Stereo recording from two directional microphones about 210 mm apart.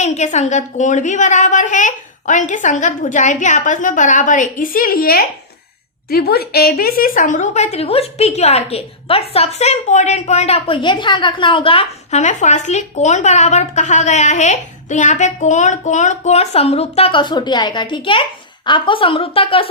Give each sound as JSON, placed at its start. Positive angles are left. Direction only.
{"t": 0.0, "sound": "a woman's voice", "side_deg": 35}